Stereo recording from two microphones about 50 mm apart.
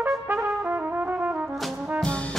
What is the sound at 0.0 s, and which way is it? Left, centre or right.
Trumpet, right.